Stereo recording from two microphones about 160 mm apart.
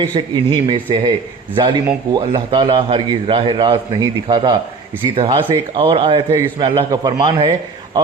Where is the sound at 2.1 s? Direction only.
35° right (ahead or behind).